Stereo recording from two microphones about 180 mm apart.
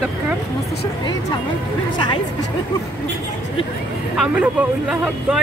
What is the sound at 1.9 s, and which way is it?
Speech, 25° left (ahead or behind).